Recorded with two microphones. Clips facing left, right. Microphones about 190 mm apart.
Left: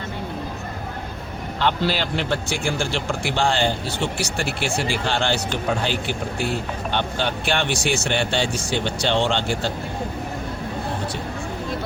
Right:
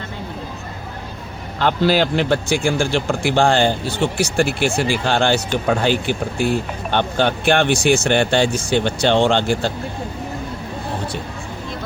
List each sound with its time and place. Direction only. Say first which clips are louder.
1.5 s speech: right 6 dB; 45° right (ahead or behind)
6.9 s speech: right 7 dB; 50° right (ahead or behind)